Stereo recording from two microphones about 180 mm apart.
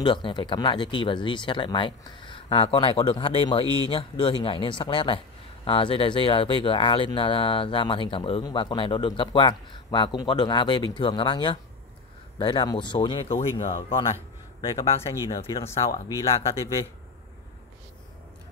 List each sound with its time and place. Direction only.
0.0 s speech: 25° left (ahead or behind)
15.1 s speech: 20° left (ahead or behind)